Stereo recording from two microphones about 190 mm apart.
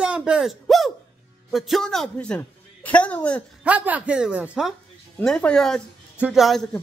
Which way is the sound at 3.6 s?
5° right (ahead or behind).